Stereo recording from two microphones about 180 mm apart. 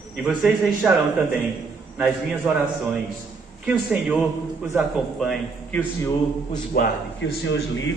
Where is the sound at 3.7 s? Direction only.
5° right (ahead or behind).